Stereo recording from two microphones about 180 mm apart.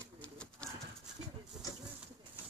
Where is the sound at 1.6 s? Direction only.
20° left (ahead or behind).